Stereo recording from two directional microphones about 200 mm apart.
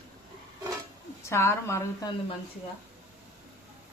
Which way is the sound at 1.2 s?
15° left (ahead or behind).